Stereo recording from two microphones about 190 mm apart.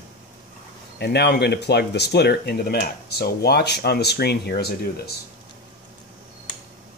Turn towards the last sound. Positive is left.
turn(degrees=55)  # may be behind; listen again after turning